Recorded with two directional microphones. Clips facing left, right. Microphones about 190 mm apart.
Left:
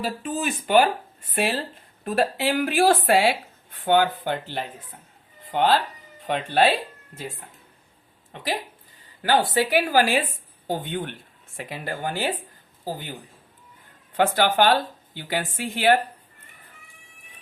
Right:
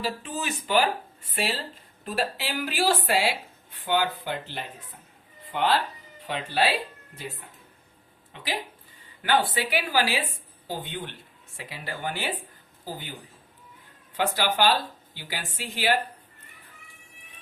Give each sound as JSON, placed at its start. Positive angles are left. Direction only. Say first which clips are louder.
{"t": 0.0, "sound": "speech", "louder": "left 4 dB", "side_deg": 50}
{"t": 5.5, "sound": "speech", "louder": "left 4 dB", "side_deg": 50}
{"t": 9.2, "sound": "speech", "louder": "left 4 dB", "side_deg": 40}
{"t": 14.2, "sound": "speech", "louder": "left 5 dB", "side_deg": 55}